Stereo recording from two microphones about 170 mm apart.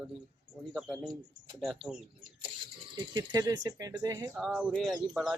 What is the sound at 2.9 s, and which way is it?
Speech, 25° right (ahead or behind).